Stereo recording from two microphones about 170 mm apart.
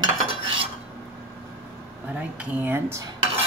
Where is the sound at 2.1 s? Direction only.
10° right (ahead or behind).